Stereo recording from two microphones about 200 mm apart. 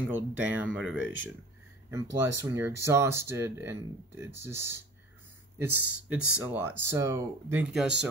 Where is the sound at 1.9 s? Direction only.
15° right (ahead or behind).